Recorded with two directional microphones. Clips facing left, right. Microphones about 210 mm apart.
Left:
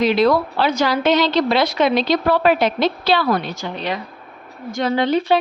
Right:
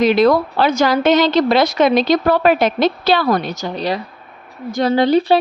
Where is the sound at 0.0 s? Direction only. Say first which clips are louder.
Right 3 dB; 50° right (ahead or behind).